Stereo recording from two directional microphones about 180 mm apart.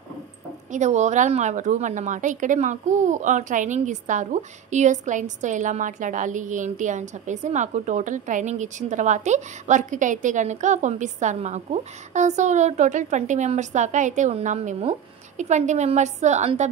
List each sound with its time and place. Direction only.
0.7 s a woman's voice: 40° right (ahead or behind)